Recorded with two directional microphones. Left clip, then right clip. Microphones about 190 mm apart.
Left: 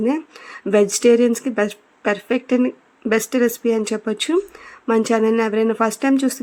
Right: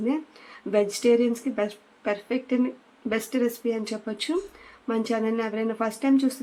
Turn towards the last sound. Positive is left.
turn(degrees=45)  # may be behind; listen again after turning